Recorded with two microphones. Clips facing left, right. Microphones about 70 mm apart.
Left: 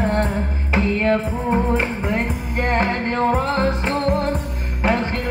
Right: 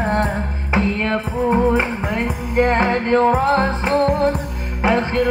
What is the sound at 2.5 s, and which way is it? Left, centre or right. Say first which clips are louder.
Music: right 4 dB; right.